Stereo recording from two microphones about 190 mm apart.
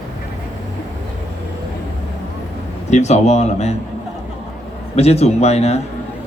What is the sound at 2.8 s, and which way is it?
Speech, 35° left (ahead or behind).